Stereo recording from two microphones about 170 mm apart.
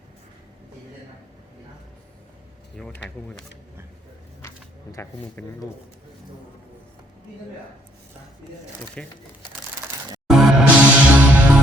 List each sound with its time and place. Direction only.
2.8 s speech: 5° left (ahead or behind)
4.4 s speech: 15° left (ahead or behind)
9.0 s speech: 5° left (ahead or behind)
10.2 s music: 5° right (ahead or behind)